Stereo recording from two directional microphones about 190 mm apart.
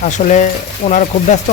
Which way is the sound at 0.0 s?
40° left (ahead or behind).